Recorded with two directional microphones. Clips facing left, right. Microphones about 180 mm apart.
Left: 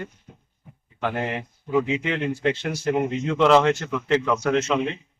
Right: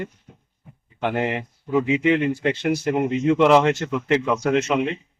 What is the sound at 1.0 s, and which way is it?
Speech, 15° right (ahead or behind).